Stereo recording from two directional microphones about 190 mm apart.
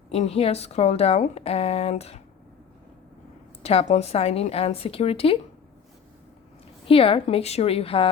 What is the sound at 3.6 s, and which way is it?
A woman's voice, 35° left (ahead or behind).